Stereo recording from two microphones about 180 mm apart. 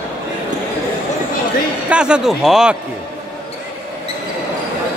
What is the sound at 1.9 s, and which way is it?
Speech, 5° right (ahead or behind).